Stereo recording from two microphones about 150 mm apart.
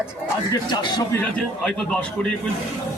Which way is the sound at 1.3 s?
5° left (ahead or behind).